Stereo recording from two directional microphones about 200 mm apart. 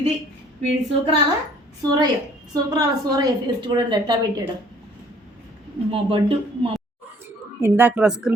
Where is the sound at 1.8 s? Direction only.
20° right (ahead or behind).